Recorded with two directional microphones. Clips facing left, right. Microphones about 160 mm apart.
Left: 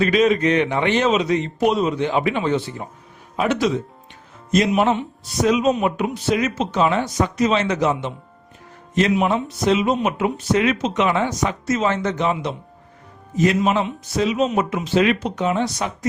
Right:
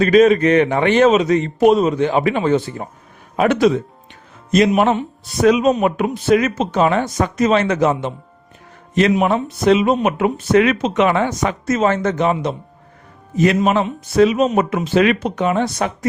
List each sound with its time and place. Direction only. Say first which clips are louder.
0.0 s a man's voice: right 5 dB; 45° right (ahead or behind)
3.3 s speech: right 5 dB; 55° right (ahead or behind)
4.7 s a man's voice: right 3 dB; 50° right (ahead or behind)
9.1 s speech: right 3 dB; 55° right (ahead or behind)
13.3 s speech: right 3 dB; 65° right (ahead or behind)
13.6 s speech: right 3 dB; 50° right (ahead or behind)